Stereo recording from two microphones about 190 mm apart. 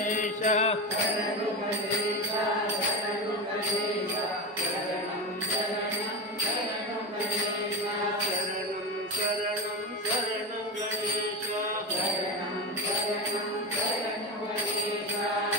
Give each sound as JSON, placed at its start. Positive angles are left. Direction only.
{"t": 0.2, "sound": "mantra", "side_deg": 40}